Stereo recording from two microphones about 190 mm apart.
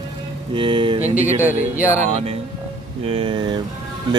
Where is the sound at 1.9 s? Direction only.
35° right (ahead or behind).